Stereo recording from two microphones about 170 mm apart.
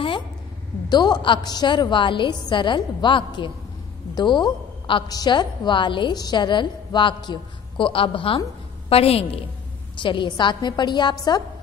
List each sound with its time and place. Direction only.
0.8 s a woman's voice: 25° left (ahead or behind)